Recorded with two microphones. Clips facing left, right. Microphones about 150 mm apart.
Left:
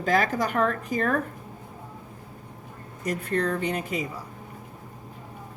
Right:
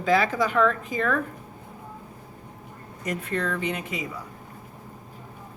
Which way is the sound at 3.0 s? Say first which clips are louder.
Left 2 dB; 40° left (ahead or behind).